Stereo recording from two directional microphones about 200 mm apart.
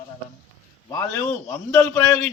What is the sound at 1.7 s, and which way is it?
Speech, 10° left (ahead or behind).